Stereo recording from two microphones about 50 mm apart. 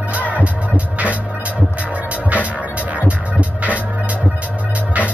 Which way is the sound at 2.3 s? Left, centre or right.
Right.